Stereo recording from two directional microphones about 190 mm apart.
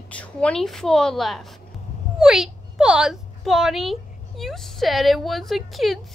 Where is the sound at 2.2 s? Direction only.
Centre (ahead or behind).